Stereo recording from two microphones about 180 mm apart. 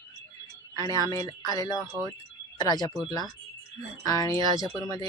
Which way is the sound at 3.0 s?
20° left (ahead or behind).